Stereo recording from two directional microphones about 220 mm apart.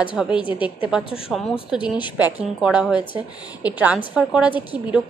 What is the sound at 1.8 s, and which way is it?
Speech, 20° left (ahead or behind).